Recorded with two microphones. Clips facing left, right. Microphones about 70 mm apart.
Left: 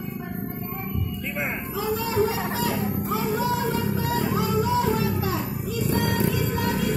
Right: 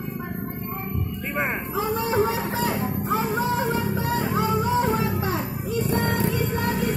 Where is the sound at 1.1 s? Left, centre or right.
Right.